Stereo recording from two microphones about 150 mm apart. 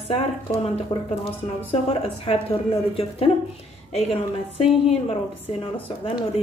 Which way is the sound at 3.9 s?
40° left (ahead or behind).